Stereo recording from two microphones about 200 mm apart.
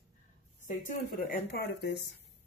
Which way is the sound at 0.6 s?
40° left (ahead or behind).